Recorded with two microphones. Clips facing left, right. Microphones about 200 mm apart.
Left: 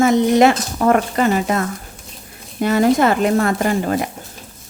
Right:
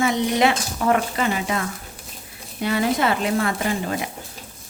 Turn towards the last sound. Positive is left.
turn(degrees=50)  # may be behind; listen again after turning